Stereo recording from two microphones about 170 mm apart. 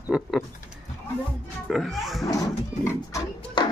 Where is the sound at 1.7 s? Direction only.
Centre (ahead or behind).